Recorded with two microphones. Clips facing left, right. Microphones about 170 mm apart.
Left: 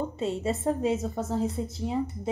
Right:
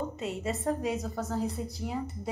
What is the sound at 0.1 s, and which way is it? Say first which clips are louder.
A woman's voice: left 5 dB; 30° left (ahead or behind).